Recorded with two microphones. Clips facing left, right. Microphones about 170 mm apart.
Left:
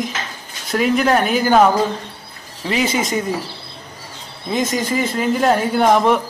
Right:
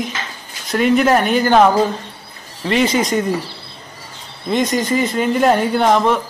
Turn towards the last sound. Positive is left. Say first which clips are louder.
# even
turn(degrees=10)  # may be behind; listen again after turning